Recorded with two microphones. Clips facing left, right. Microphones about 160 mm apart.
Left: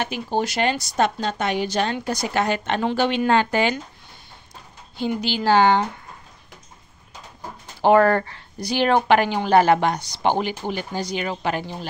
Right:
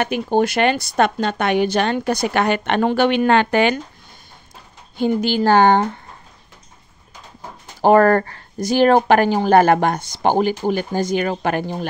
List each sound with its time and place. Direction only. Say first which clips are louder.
0.0 s speech: right 6 dB; 55° right (ahead or behind)
4.9 s a woman's voice: right 6 dB; 50° right (ahead or behind)
7.8 s a woman's voice: right 3 dB; 45° right (ahead or behind)